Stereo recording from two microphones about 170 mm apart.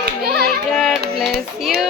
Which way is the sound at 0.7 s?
Centre (ahead or behind).